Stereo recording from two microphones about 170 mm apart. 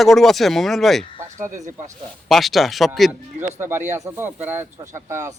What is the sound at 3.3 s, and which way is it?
Speech, 15° right (ahead or behind).